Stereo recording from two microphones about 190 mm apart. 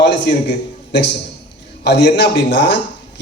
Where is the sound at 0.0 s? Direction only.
65° left (ahead or behind).